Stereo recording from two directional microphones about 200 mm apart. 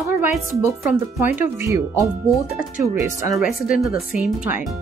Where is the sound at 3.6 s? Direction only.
Centre (ahead or behind).